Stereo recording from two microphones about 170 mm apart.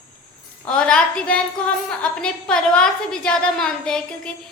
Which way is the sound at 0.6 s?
5° left (ahead or behind).